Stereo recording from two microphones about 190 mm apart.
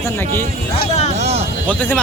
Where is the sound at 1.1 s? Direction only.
35° right (ahead or behind).